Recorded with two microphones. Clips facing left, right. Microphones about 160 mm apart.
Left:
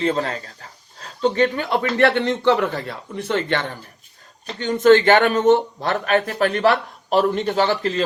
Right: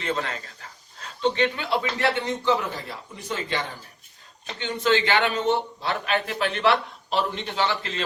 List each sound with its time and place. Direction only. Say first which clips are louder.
0.0 s speech: left 7 dB; 35° left (ahead or behind); by 3.7 s 65° left (ahead or behind)
4.6 s a man's voice: left 10 dB; 50° left (ahead or behind)